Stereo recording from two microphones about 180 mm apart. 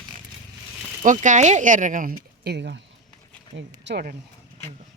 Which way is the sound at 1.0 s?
45° right (ahead or behind).